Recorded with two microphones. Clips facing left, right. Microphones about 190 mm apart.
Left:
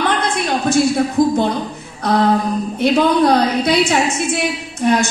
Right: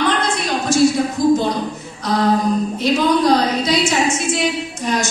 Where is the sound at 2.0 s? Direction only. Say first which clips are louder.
Left 1 dB; 60° left (ahead or behind).